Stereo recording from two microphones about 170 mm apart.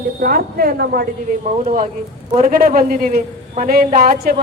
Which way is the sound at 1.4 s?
40° right (ahead or behind).